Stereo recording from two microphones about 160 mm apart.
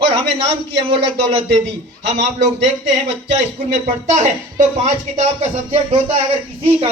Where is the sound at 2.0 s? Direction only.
45° right (ahead or behind).